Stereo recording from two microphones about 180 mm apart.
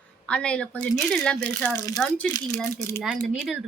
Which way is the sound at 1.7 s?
20° left (ahead or behind).